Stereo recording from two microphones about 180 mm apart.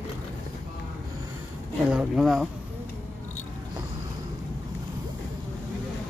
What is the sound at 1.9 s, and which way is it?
Speech, 5° right (ahead or behind).